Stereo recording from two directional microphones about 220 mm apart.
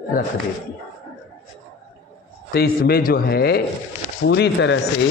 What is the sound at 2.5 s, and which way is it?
A man's voice, 45° left (ahead or behind).